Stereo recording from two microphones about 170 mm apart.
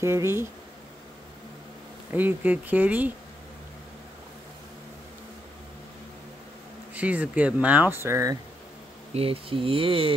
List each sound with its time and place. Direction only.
0.0 s speech: 15° right (ahead or behind)
2.1 s speech: 10° right (ahead or behind)
6.9 s speech: 10° right (ahead or behind)
9.1 s speech: 35° right (ahead or behind)